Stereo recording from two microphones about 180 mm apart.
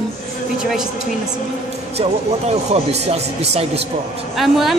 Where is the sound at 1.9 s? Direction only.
35° right (ahead or behind).